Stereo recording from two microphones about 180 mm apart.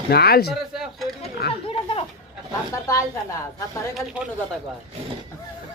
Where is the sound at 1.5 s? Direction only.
30° left (ahead or behind).